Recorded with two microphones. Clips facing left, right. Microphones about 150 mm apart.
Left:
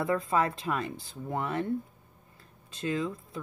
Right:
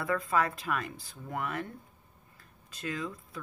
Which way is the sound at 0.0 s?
25° left (ahead or behind).